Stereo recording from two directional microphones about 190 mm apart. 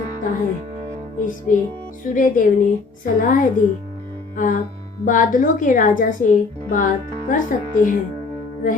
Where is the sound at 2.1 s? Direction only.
45° left (ahead or behind).